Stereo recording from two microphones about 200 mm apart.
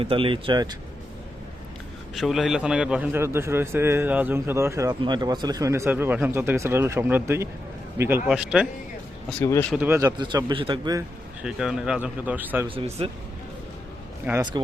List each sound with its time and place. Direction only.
0.0 s speech: 25° right (ahead or behind)
2.1 s a man's voice: centre (ahead or behind)
9.4 s speech: 10° left (ahead or behind)
9.7 s a man's voice: 10° right (ahead or behind)
11.4 s speech: 5° right (ahead or behind)
12.6 s speech: 30° right (ahead or behind)
14.3 s a man's voice: 10° right (ahead or behind)